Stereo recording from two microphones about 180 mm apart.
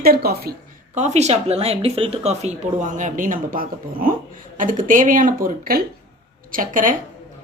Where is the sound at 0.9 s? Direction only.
40° right (ahead or behind).